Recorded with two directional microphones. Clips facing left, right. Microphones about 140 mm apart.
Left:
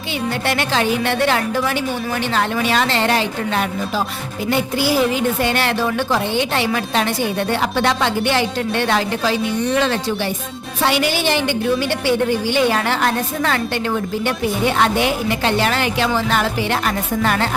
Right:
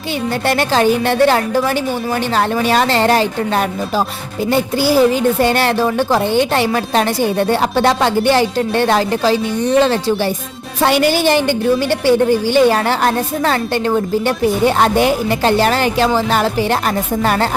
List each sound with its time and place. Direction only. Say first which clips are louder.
0.4 s a woman's voice: right 7 dB; 40° right (ahead or behind)